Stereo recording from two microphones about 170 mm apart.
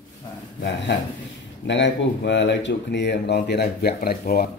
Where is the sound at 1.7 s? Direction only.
90° left.